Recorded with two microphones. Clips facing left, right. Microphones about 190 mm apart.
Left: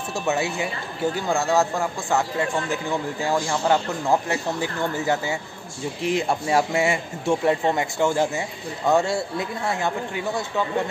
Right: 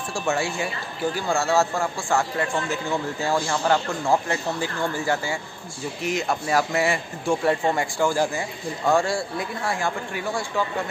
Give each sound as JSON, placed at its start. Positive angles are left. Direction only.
{"t": 0.1, "sound": "a man's voice", "side_deg": 20}